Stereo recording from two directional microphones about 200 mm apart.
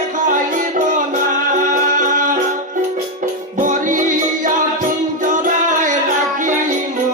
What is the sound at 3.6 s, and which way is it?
Music, 40° right (ahead or behind).